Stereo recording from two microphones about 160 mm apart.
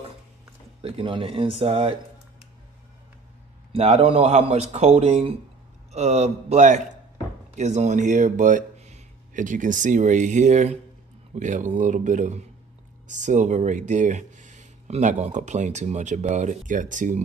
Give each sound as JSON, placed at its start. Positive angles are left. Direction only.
{"t": 0.8, "sound": "speech", "side_deg": -35}
{"t": 3.7, "sound": "speech", "side_deg": -35}